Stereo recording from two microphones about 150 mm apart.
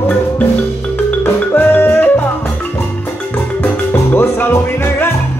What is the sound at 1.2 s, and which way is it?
Music, 15° left (ahead or behind).